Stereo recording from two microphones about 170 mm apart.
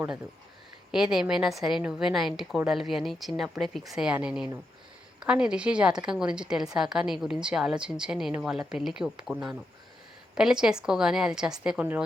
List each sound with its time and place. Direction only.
0.9 s a woman's voice: 5° right (ahead or behind)